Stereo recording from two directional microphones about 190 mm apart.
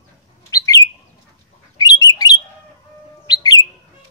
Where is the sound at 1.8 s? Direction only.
20° left (ahead or behind).